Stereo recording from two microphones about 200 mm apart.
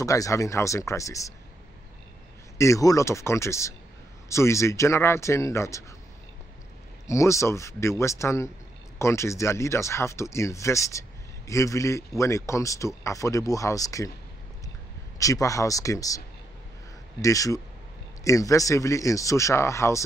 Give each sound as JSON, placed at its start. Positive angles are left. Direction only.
{"t": 0.0, "sound": "speech", "side_deg": 15}
{"t": 2.5, "sound": "speech", "side_deg": 15}
{"t": 7.1, "sound": "speech", "side_deg": 15}
{"t": 15.1, "sound": "speech", "side_deg": 15}
{"t": 17.2, "sound": "speech", "side_deg": 15}